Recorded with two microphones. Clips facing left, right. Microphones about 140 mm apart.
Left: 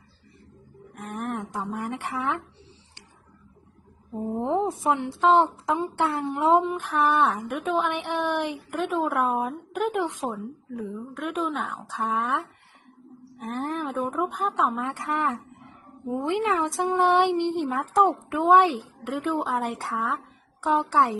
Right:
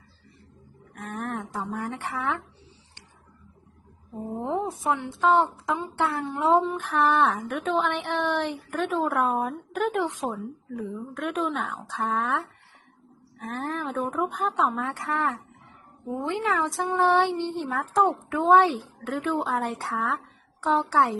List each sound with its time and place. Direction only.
1.0 s speech: 15° left (ahead or behind)
4.4 s a woman's voice: 20° left (ahead or behind); by 11.8 s centre (ahead or behind)
12.1 s speech: 15° left (ahead or behind)